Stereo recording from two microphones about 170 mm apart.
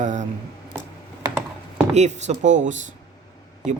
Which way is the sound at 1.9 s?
40° right (ahead or behind).